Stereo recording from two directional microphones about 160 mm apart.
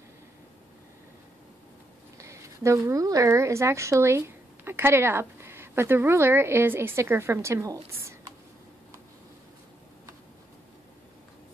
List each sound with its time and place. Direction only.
2.1 s a woman's voice: 20° right (ahead or behind)